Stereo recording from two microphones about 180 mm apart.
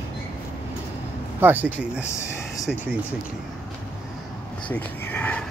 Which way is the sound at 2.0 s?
15° left (ahead or behind).